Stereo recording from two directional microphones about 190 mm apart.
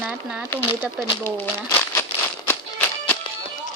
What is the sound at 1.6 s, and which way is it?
Crumpling, 15° left (ahead or behind).